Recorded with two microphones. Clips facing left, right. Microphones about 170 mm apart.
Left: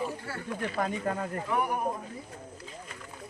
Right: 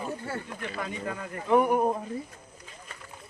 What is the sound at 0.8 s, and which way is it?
Speech, 45° left (ahead or behind).